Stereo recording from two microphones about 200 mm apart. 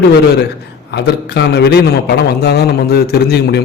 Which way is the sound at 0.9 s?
55° left (ahead or behind).